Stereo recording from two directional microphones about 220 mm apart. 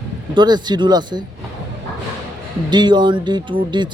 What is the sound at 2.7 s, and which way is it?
Speech, 20° right (ahead or behind).